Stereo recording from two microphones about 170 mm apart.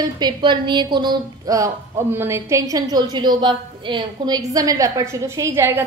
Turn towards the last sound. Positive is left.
turn(degrees=-15)  # may be behind; listen again after turning